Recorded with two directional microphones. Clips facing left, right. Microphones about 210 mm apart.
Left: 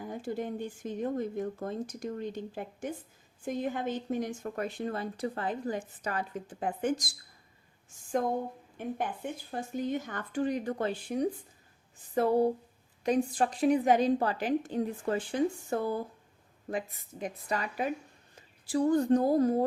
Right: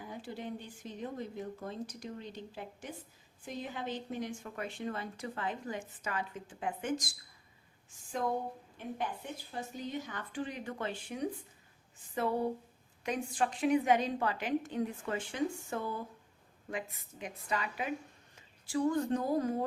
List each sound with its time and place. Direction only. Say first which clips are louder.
0.0 s speech: left 7 dB; 45° left (ahead or behind)
8.8 s speech: left 5 dB; 50° left (ahead or behind)